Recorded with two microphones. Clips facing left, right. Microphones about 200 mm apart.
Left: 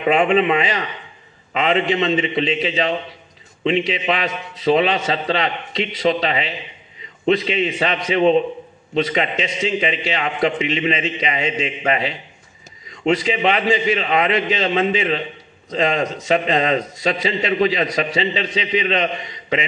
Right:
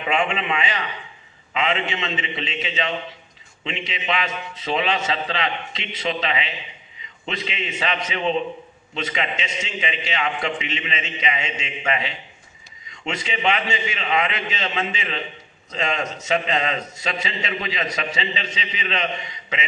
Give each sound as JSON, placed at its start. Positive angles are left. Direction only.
{"t": 0.0, "sound": "a man's voice", "side_deg": 40}